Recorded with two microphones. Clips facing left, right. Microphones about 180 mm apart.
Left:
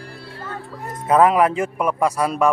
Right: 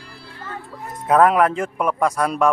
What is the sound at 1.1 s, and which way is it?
A man's voice, centre (ahead or behind).